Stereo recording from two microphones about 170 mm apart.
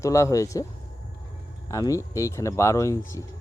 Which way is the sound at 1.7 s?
20° left (ahead or behind).